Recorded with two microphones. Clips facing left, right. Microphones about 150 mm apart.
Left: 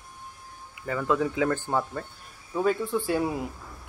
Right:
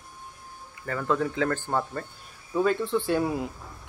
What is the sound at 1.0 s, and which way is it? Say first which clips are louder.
Speech: left 1 dB; 10° left (ahead or behind).